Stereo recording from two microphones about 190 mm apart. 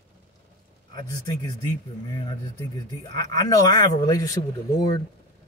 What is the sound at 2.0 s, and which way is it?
Speech, 25° left (ahead or behind).